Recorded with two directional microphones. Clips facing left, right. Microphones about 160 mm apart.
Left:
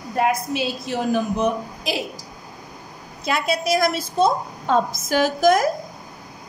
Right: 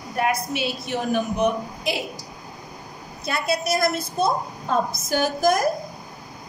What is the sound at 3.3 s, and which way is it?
A woman's voice, 90° left.